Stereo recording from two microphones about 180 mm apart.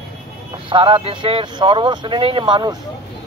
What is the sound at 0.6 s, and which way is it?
Speech, 30° right (ahead or behind).